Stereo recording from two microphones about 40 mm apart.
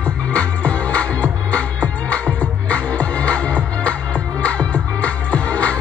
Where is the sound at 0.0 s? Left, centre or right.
Left.